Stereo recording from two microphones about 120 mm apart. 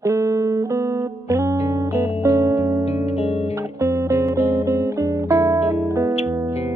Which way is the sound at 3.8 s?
25° right (ahead or behind).